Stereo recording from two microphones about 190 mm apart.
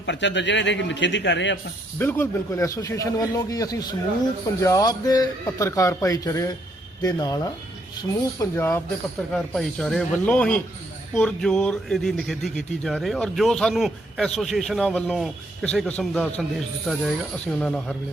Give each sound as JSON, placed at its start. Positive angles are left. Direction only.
{"t": 0.0, "sound": "a man's voice", "side_deg": 70}
{"t": 2.0, "sound": "a man's voice", "side_deg": 10}
{"t": 9.3, "sound": "speech", "side_deg": 5}